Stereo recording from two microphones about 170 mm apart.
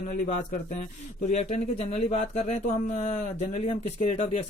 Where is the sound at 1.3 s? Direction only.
40° left (ahead or behind).